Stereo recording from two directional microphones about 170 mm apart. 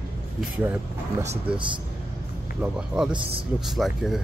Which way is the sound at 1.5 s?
30° right (ahead or behind).